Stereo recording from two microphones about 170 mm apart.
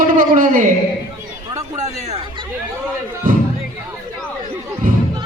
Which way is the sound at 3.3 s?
55° right (ahead or behind).